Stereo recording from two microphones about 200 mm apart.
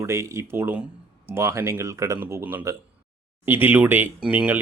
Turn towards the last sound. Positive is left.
turn(degrees=-5)  # may be behind; listen again after turning